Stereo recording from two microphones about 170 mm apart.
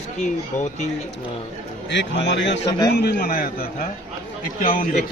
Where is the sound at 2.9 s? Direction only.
65° left (ahead or behind); by 4.8 s 50° left (ahead or behind).